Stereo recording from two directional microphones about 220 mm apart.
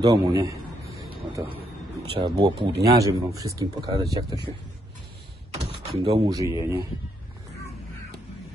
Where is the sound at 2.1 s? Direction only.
15° right (ahead or behind).